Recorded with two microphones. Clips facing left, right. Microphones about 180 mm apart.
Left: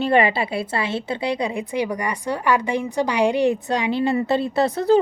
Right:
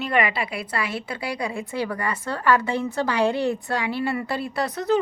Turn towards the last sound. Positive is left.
turn(degrees=30)  # may be behind; listen again after turning